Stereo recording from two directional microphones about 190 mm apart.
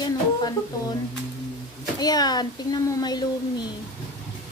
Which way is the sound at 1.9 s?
20° left (ahead or behind).